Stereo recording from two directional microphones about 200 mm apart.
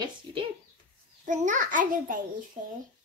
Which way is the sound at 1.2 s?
40° right (ahead or behind).